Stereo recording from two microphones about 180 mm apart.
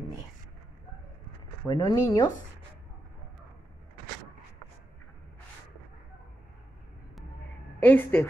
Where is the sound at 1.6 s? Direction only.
20° left (ahead or behind).